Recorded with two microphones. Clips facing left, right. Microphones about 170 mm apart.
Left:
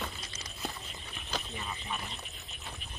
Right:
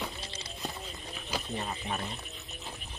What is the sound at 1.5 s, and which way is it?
Speech, 40° right (ahead or behind).